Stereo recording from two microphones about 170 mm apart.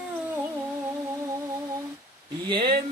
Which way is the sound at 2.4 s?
30° right (ahead or behind).